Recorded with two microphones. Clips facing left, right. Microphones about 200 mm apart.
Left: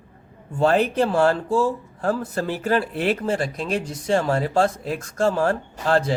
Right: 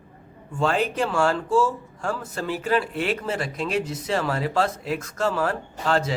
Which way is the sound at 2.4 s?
45° left (ahead or behind).